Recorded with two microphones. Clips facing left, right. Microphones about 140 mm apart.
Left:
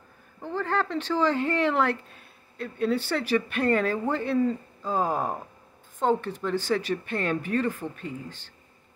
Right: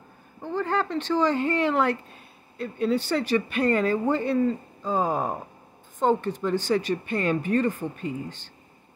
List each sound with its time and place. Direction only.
0.4 s speech: centre (ahead or behind)